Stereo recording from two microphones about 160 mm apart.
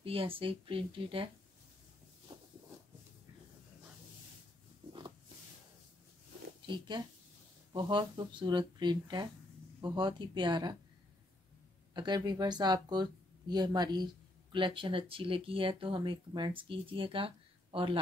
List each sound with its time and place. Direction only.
0.0 s speech: 35° right (ahead or behind)
4.8 s pig: 30° right (ahead or behind)
6.6 s speech: 30° right (ahead or behind)
11.9 s speech: 25° right (ahead or behind)